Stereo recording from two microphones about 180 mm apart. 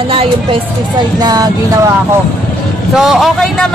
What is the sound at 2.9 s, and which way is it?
Speech, centre (ahead or behind).